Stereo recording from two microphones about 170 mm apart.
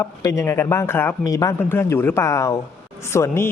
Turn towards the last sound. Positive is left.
turn(degrees=15)  # may be behind; listen again after turning